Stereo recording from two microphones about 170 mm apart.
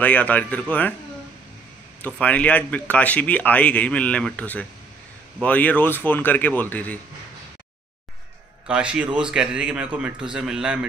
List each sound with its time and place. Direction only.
0.0 s speech: 10° left (ahead or behind)
2.0 s speech: 10° left (ahead or behind)
8.6 s a man's voice: 5° right (ahead or behind)